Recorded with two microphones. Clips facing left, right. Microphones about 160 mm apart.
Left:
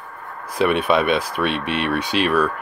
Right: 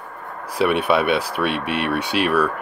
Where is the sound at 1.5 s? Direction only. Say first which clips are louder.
Even; 60° right (ahead or behind).